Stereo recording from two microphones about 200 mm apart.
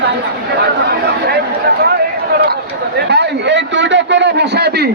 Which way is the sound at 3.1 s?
60° right (ahead or behind).